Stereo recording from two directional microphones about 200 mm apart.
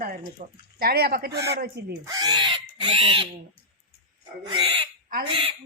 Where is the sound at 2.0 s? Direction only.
20° right (ahead or behind).